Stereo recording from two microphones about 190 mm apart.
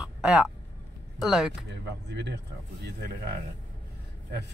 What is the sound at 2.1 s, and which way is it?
Speech, 65° right (ahead or behind).